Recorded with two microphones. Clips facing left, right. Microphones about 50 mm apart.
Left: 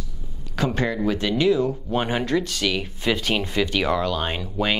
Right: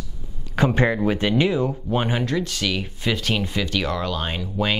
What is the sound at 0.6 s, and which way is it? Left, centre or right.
Speech, right.